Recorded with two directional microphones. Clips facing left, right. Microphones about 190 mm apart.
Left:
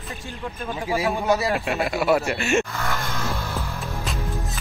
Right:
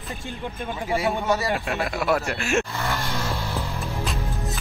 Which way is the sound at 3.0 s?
15° right (ahead or behind).